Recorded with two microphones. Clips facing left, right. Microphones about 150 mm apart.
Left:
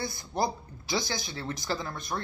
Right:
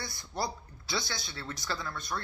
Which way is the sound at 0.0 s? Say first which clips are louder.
Left 6 dB; 20° left (ahead or behind).